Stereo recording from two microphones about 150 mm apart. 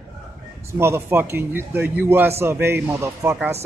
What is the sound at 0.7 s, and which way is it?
A man's voice, 15° right (ahead or behind).